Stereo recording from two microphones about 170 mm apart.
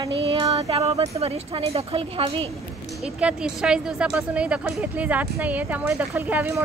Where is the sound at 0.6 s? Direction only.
35° right (ahead or behind).